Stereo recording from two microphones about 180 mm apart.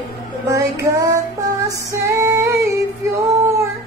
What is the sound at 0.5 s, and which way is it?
Child singing, 20° right (ahead or behind).